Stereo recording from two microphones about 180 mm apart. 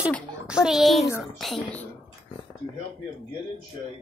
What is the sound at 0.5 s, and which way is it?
Speech, 5° right (ahead or behind).